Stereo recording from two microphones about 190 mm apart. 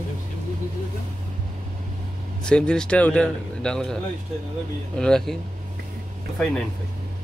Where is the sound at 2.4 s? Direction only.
5° left (ahead or behind).